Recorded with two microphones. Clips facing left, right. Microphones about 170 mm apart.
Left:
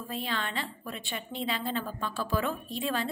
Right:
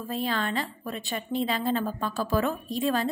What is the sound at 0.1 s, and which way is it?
A woman's voice, 40° right (ahead or behind).